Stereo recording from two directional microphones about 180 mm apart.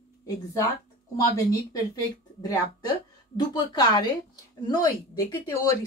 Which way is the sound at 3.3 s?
25° left (ahead or behind).